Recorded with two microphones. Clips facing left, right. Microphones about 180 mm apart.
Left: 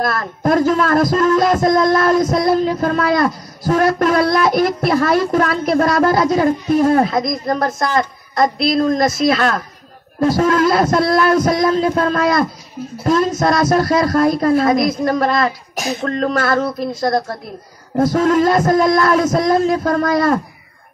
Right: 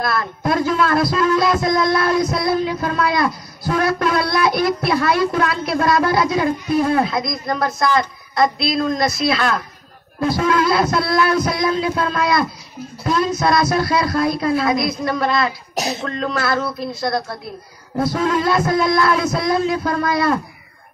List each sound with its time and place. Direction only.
0.0 s a man's voice: 45° left (ahead or behind)